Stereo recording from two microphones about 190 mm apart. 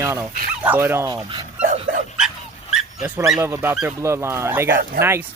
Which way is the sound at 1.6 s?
45° right (ahead or behind).